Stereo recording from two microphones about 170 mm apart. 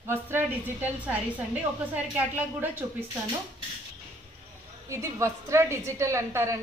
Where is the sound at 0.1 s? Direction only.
15° right (ahead or behind).